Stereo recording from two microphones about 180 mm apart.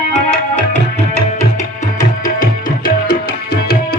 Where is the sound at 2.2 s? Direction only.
50° left (ahead or behind).